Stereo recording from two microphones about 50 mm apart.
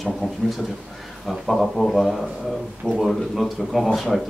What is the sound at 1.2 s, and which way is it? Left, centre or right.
Speech, centre.